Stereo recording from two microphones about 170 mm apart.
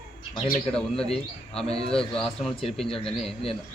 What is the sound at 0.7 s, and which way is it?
A man's voice, 5° left (ahead or behind).